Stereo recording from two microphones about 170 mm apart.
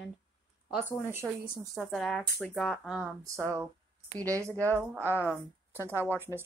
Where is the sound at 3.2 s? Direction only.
15° right (ahead or behind).